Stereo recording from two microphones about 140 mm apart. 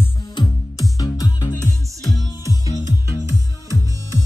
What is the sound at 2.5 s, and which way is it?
Music, 25° right (ahead or behind).